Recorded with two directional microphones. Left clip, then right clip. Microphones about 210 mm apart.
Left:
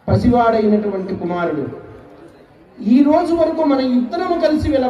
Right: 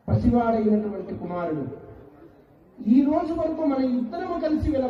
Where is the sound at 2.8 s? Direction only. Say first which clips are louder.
Left 8 dB; 45° left (ahead or behind).